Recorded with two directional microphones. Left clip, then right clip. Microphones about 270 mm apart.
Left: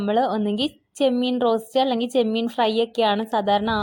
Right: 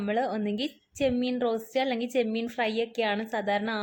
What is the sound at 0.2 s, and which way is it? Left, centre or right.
Speech, left.